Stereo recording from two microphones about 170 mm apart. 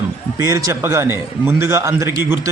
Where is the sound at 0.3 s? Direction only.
20° right (ahead or behind).